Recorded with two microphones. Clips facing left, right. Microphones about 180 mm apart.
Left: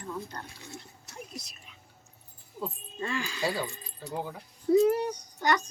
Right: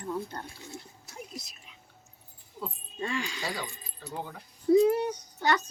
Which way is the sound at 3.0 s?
15° right (ahead or behind).